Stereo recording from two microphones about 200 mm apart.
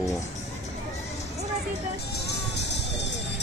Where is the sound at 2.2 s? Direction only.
60° left (ahead or behind).